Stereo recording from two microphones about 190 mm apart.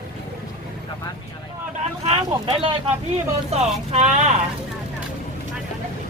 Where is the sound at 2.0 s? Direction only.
30° right (ahead or behind).